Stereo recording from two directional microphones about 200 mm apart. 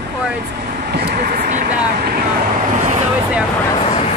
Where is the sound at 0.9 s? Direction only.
55° right (ahead or behind).